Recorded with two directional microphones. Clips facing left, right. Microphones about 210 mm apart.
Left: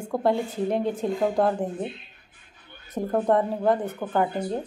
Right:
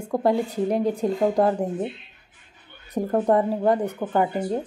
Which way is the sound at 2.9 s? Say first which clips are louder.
Right 2 dB; 10° right (ahead or behind).